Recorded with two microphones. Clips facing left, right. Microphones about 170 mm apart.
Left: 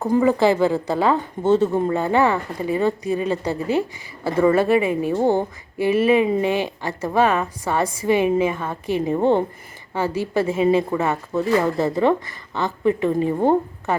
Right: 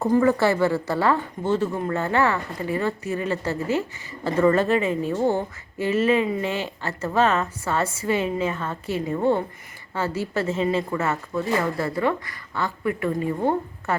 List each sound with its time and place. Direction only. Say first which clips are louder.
0.1 s speech: left 3 dB; 15° left (ahead or behind)
9.0 s a woman's voice: left 3 dB; 25° left (ahead or behind)